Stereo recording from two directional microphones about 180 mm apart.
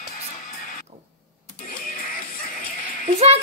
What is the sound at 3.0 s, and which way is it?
Speech, 35° right (ahead or behind).